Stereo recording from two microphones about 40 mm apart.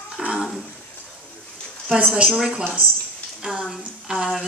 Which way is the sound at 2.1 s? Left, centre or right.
Centre.